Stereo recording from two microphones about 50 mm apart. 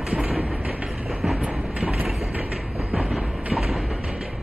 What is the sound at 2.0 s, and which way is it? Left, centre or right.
Train, centre.